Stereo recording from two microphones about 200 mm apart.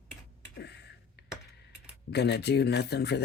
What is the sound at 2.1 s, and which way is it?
Speech, 55° left (ahead or behind).